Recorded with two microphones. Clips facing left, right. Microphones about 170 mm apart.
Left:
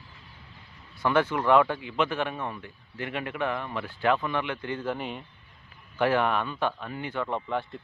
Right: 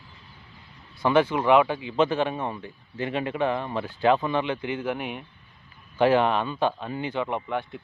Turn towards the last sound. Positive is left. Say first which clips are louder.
# right 1 dB
turn(degrees=-5)  # may be behind; listen again after turning